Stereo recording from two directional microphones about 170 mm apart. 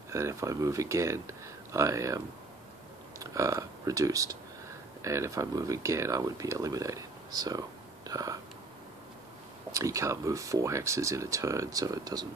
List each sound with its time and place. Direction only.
0.1 s speech: 15° right (ahead or behind)
9.7 s speech: 20° right (ahead or behind)